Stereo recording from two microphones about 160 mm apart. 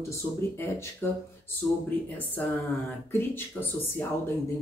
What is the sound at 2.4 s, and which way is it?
Speech, 10° left (ahead or behind).